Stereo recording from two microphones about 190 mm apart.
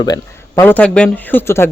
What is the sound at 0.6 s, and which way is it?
Speech, 10° left (ahead or behind).